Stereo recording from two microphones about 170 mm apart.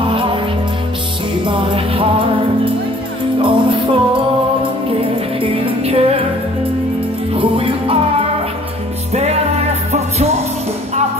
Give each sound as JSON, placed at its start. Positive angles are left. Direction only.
{"t": 0.1, "sound": "music", "side_deg": -30}
{"t": 1.4, "sound": "music", "side_deg": -30}
{"t": 3.3, "sound": "music", "side_deg": -30}
{"t": 5.4, "sound": "music", "side_deg": -30}
{"t": 7.3, "sound": "music", "side_deg": -30}